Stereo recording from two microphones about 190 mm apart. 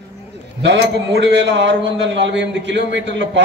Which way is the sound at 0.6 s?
65° right (ahead or behind).